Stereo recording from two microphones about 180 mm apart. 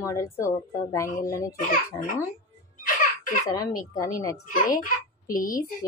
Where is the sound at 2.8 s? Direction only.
45° left (ahead or behind).